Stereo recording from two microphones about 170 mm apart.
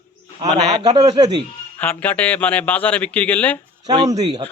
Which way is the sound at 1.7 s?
10° left (ahead or behind).